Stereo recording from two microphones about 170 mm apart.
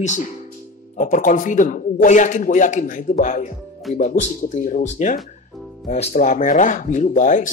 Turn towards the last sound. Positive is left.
turn(degrees=50)  # may be behind; listen again after turning